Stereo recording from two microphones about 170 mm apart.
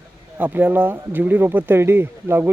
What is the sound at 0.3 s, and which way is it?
Speech, 10° right (ahead or behind).